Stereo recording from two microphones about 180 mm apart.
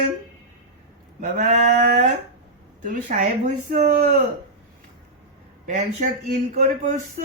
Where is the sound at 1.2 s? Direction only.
45° right (ahead or behind).